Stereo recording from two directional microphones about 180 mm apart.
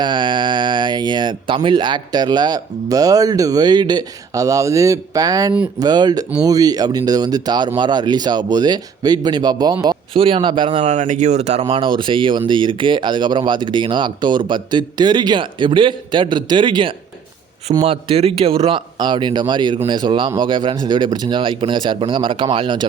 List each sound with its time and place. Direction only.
0.0 s speech: 25° right (ahead or behind)